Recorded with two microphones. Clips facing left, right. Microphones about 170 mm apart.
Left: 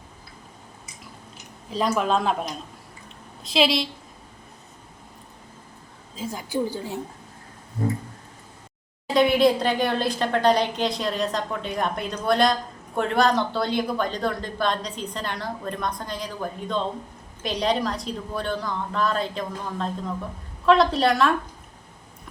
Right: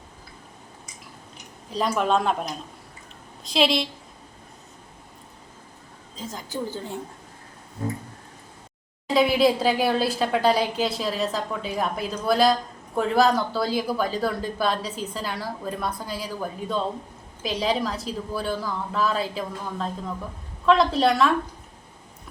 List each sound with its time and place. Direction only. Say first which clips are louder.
1.7 s a woman's voice: even; centre (ahead or behind)
6.1 s a woman's voice: left 5 dB; 10° left (ahead or behind)
9.1 s a woman's voice: left 1 dB; centre (ahead or behind)